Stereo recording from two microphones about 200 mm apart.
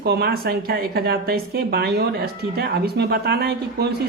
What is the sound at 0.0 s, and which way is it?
Speech, 55° right (ahead or behind).